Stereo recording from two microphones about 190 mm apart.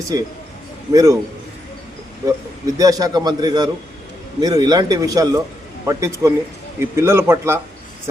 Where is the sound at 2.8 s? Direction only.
20° right (ahead or behind).